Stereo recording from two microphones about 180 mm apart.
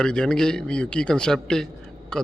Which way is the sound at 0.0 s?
5° left (ahead or behind).